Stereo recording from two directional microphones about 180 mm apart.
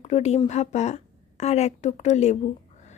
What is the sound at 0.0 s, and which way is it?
A woman's voice, 35° left (ahead or behind).